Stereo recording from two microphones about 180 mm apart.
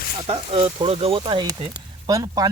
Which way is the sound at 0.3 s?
30° right (ahead or behind).